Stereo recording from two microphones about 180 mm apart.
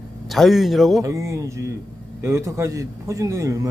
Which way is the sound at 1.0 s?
15° right (ahead or behind).